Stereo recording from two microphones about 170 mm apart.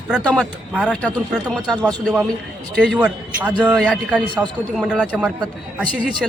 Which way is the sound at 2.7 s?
5° left (ahead or behind).